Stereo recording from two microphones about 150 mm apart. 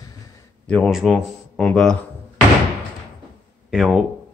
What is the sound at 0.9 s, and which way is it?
Speech, 5° right (ahead or behind).